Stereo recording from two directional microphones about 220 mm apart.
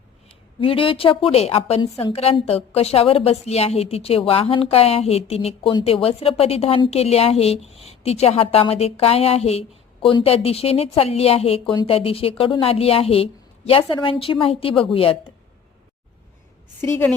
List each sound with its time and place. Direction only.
0.6 s a woman's voice: 25° left (ahead or behind)
16.8 s a woman's voice: 10° left (ahead or behind)